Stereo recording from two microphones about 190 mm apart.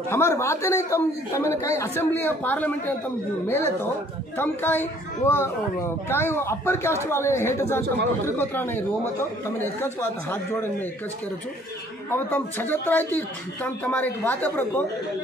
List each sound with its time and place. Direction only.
0.1 s speech: 15° left (ahead or behind)
12.1 s speech: 10° left (ahead or behind)